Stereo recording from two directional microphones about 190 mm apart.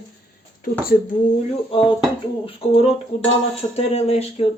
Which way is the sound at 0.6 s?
50° left (ahead or behind).